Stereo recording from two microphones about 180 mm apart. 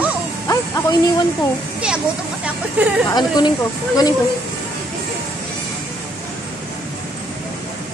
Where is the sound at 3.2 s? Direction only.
20° left (ahead or behind).